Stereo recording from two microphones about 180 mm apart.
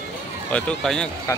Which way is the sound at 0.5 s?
5° left (ahead or behind).